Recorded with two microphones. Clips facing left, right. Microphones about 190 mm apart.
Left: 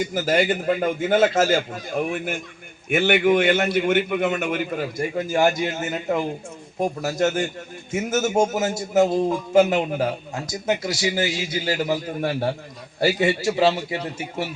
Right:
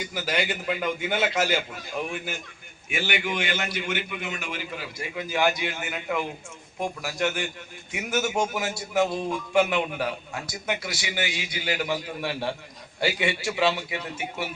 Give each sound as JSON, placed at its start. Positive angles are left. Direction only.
{"t": 0.0, "sound": "a man's voice", "side_deg": 50}